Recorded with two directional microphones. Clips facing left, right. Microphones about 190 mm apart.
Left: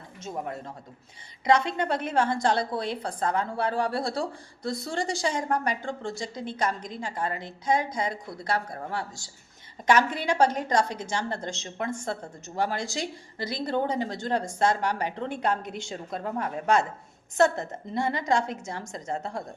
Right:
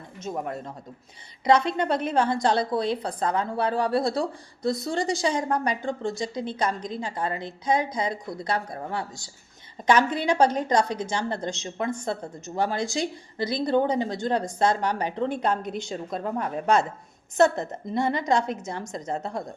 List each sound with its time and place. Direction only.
1.6 s speech: 20° right (ahead or behind)